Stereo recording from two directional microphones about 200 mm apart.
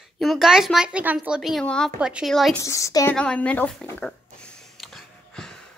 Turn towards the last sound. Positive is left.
turn(degrees=5)  # may be behind; listen again after turning